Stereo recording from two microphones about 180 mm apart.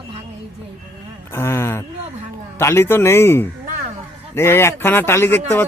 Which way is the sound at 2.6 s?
15° left (ahead or behind).